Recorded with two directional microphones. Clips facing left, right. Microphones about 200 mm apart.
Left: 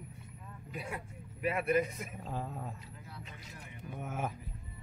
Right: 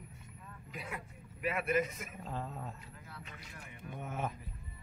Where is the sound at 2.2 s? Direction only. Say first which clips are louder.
Left 1 dB; 5° left (ahead or behind).